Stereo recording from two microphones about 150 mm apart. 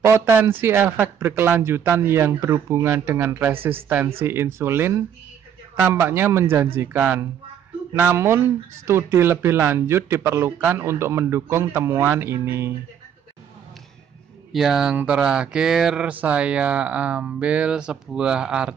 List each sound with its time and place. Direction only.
0.0 s speech: 15° right (ahead or behind)
14.5 s speech: centre (ahead or behind)